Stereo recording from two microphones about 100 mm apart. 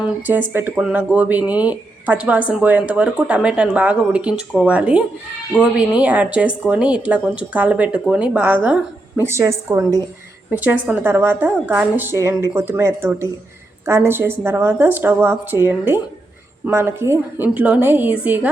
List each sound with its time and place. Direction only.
0.0 s speech: 20° right (ahead or behind)
9.2 s a woman's voice: 30° right (ahead or behind)
10.6 s a woman's voice: 15° right (ahead or behind)